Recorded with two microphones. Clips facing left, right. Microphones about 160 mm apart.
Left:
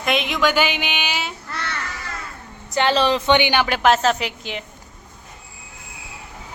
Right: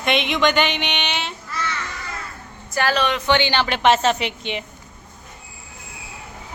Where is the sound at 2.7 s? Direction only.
25° left (ahead or behind).